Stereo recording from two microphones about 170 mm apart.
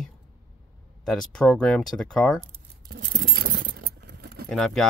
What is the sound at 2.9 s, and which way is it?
Keys jangling, 60° right (ahead or behind).